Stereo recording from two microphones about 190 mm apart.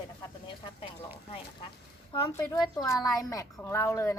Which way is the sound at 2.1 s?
20° left (ahead or behind).